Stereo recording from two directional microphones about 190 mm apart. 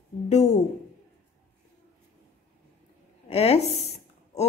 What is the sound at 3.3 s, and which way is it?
Speech, 30° left (ahead or behind).